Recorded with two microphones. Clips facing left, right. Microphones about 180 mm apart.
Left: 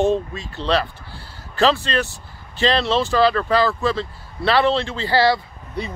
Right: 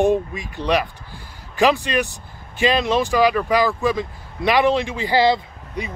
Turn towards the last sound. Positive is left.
turn(degrees=-15)  # may be behind; listen again after turning